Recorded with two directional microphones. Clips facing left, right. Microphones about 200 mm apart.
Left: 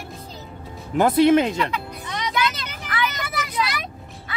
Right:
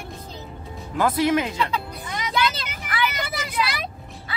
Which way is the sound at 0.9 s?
25° left (ahead or behind).